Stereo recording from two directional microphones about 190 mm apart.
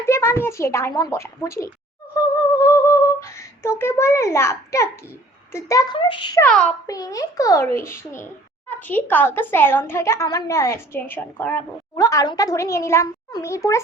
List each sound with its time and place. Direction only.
0.0 s a woman's voice: 15° left (ahead or behind)
2.6 s a sound: 15° left (ahead or behind)
5.5 s a child's voice: 15° left (ahead or behind)
6.4 s a woman's voice: 5° left (ahead or behind)
6.8 s a woman's voice: 20° left (ahead or behind)
8.9 s a woman's voice: 10° left (ahead or behind)